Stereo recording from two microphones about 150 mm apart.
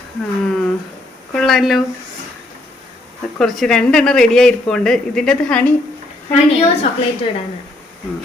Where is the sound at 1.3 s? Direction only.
Centre (ahead or behind).